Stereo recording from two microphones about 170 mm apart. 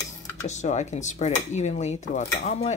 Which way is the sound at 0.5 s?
45° left (ahead or behind).